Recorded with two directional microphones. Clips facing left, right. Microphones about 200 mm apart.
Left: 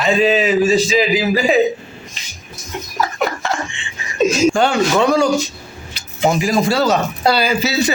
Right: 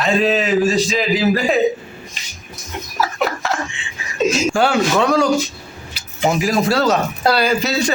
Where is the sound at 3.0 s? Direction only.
5° right (ahead or behind).